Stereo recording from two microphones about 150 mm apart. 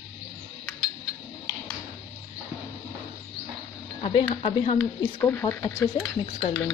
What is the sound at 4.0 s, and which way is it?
Speech, 40° left (ahead or behind).